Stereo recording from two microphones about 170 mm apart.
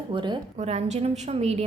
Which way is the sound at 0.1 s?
25° right (ahead or behind).